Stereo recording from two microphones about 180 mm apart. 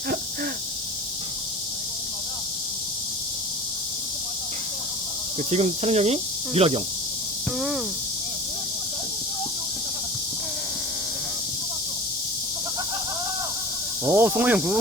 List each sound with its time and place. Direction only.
5.5 s speech: 35° right (ahead or behind)
14.0 s speech: 15° right (ahead or behind)